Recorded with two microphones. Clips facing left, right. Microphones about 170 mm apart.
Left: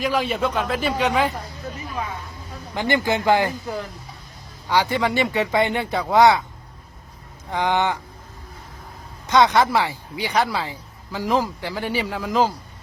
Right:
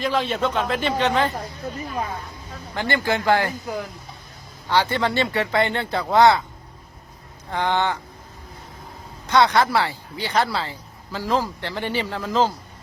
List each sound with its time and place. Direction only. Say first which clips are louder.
0.0 s a man's voice: even; 10° left (ahead or behind)
2.7 s speech: left 2 dB; 15° left (ahead or behind)
4.7 s speech: left 1 dB; 15° left (ahead or behind)
7.5 s speech: left 1 dB; 15° left (ahead or behind)
9.2 s speech: left 1 dB; 15° left (ahead or behind)